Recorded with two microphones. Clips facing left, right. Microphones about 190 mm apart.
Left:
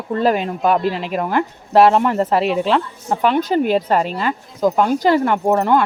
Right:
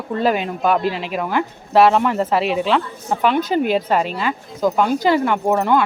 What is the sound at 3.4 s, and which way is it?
Speech, 40° left (ahead or behind).